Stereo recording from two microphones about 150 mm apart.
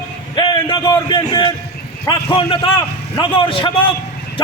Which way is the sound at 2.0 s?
35° left (ahead or behind).